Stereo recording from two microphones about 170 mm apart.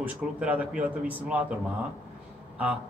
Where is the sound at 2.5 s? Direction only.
10° right (ahead or behind).